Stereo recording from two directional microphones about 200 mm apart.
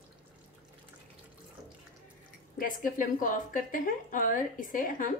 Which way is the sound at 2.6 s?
40° left (ahead or behind).